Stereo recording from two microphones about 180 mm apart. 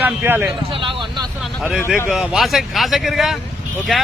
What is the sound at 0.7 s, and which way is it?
Vehicle, 30° right (ahead or behind).